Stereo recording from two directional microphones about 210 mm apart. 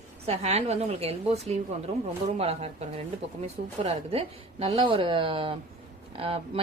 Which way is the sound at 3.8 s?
30° right (ahead or behind).